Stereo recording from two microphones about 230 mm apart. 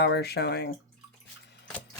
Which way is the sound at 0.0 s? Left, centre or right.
Left.